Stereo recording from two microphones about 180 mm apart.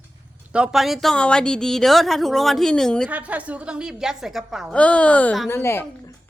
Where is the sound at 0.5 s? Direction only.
5° right (ahead or behind).